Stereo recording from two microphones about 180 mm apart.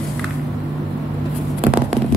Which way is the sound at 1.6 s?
10° right (ahead or behind).